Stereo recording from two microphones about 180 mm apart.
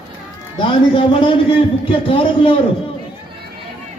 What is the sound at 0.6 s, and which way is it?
A man's voice, 30° left (ahead or behind).